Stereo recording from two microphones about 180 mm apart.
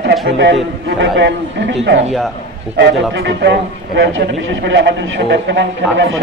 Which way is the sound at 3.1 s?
70° right (ahead or behind).